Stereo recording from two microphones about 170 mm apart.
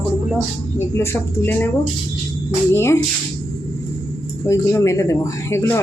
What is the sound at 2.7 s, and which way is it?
Speech, 15° left (ahead or behind).